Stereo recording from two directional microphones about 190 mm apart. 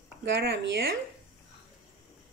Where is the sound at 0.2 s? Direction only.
60° right (ahead or behind).